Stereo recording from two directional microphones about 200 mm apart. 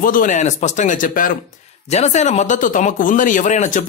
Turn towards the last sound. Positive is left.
turn(degrees=35)  # may be behind; listen again after turning